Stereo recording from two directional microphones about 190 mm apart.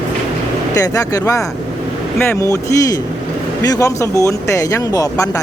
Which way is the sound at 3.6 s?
20° left (ahead or behind).